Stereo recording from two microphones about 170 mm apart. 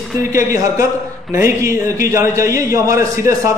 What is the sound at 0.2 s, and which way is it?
A man's voice, 15° right (ahead or behind).